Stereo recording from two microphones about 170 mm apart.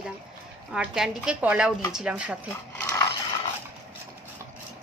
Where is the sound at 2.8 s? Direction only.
20° left (ahead or behind).